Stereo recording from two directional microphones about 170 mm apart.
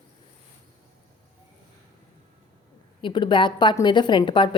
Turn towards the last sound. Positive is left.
turn(degrees=30)  # may be behind; listen again after turning